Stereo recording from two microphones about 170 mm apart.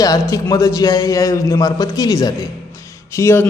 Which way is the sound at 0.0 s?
20° left (ahead or behind).